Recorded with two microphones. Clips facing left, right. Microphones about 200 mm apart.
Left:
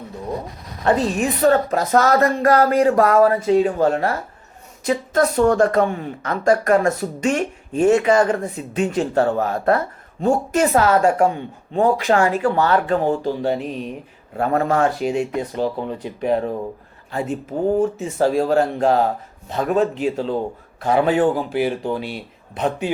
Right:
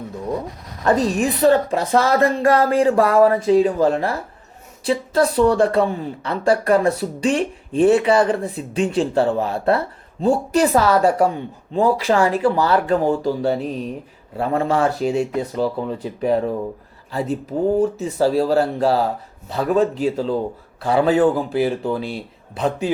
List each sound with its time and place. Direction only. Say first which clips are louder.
0.9 s a woman's voice: right 1 dB; 40° right (ahead or behind)